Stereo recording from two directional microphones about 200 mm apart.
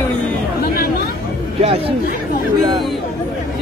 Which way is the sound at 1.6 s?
30° right (ahead or behind).